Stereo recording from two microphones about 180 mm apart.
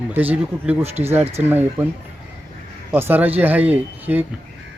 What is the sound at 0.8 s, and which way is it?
Speech, 35° right (ahead or behind).